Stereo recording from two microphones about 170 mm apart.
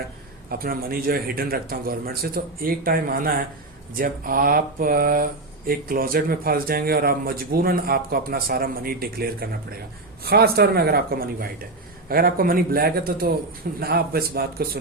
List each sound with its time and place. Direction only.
0.6 s speech: 60° right (ahead or behind)